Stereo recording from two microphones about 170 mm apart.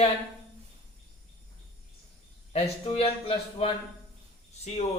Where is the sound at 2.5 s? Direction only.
35° left (ahead or behind).